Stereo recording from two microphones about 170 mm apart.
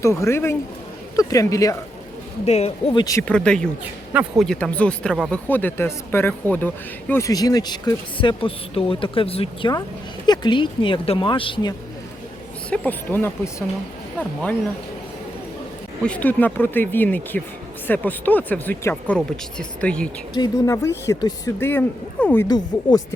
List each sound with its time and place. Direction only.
0.0 s speech: 15° left (ahead or behind)
2.4 s speech: 40° left (ahead or behind)
2.9 s speech: 20° left (ahead or behind)
3.2 s speech: 5° left (ahead or behind)
4.1 s a man's voice: 10° right (ahead or behind)
4.4 s speech: 5° left (ahead or behind)
5.5 s speech: 10° left (ahead or behind); by 11.7 s 30° left (ahead or behind)
12.7 s speech: 10° left (ahead or behind)
16.0 s speech: 10° left (ahead or behind)
20.3 s speech: 20° left (ahead or behind)
22.4 s speech: 25° left (ahead or behind)